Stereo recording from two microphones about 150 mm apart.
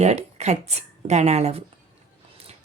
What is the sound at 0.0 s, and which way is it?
Speech, 45° right (ahead or behind).